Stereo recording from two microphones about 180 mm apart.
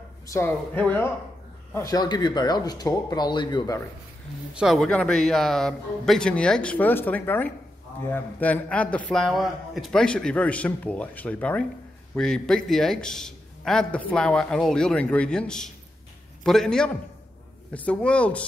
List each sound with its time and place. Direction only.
0.3 s a man's voice: 10° left (ahead or behind)
4.6 s a man's voice: centre (ahead or behind)